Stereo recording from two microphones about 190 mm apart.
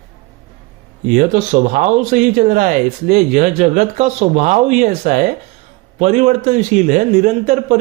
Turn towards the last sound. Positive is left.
turn(degrees=-40)  # may be behind; listen again after turning